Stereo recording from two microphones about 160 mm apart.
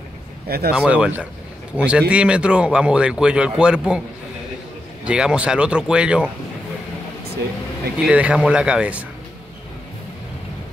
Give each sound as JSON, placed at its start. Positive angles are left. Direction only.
{"t": 0.5, "sound": "speech", "side_deg": -75}
{"t": 0.7, "sound": "speech", "side_deg": -5}
{"t": 5.0, "sound": "speech", "side_deg": -5}
{"t": 8.0, "sound": "speech", "side_deg": -5}